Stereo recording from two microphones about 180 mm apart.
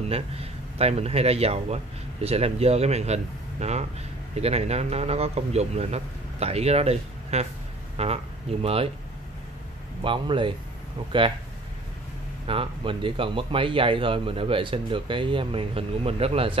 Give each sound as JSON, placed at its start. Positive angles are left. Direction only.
{"t": 0.1, "sound": "speech", "side_deg": -35}
{"t": 10.0, "sound": "speech", "side_deg": -30}
{"t": 12.4, "sound": "speech", "side_deg": -30}